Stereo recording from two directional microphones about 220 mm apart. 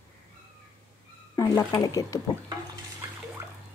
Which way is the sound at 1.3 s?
15° left (ahead or behind).